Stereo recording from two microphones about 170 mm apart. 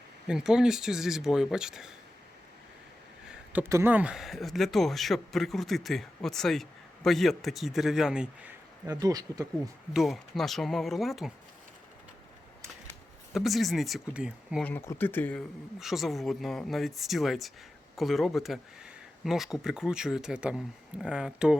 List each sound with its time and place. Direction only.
0.3 s speech: 5° right (ahead or behind)
3.2 s speech: 10° right (ahead or behind)
8.9 s speech: 20° right (ahead or behind)
9.9 s speech: centre (ahead or behind)
13.3 s speech: centre (ahead or behind)
14.6 s speech: 10° left (ahead or behind)
15.8 s speech: centre (ahead or behind)